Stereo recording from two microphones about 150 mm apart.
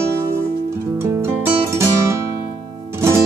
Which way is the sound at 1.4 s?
20° right (ahead or behind).